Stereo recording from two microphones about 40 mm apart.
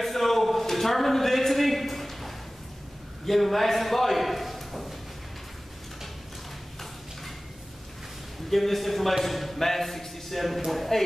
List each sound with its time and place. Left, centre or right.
0.0 s a sound: centre
3.3 s a man's voice: centre
8.5 s a man's voice: centre